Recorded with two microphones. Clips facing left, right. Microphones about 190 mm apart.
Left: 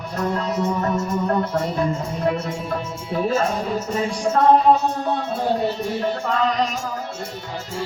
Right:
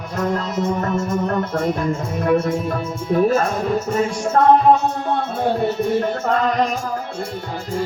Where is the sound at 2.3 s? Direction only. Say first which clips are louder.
Right 8 dB; 55° right (ahead or behind).